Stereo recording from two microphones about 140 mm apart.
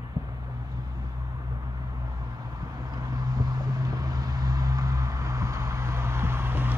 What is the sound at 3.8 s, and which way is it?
Vehicle, 25° right (ahead or behind).